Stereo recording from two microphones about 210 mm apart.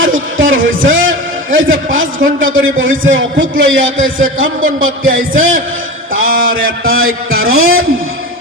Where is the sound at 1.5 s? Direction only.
65° right (ahead or behind).